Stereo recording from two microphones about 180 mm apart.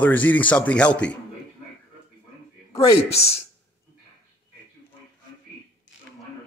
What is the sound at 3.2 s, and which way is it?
Speech, 35° left (ahead or behind).